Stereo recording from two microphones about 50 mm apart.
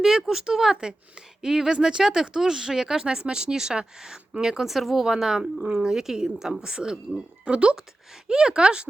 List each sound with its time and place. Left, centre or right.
0.0 s speech: centre
7.4 s speech: right